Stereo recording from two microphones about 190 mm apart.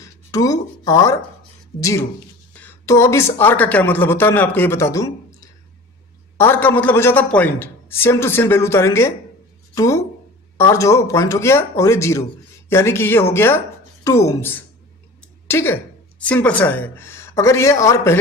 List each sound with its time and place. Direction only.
0.0 s a sound: 20° left (ahead or behind)
1.8 s speech: 15° left (ahead or behind)
6.3 s a woman's voice: 10° left (ahead or behind)